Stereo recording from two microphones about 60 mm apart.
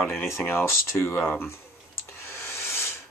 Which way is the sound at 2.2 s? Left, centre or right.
Left.